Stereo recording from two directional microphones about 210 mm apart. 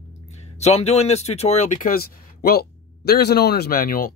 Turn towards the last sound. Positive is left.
turn(degrees=45)  # may be behind; listen again after turning